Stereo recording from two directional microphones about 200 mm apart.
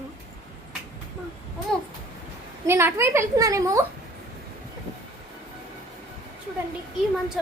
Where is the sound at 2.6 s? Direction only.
10° right (ahead or behind).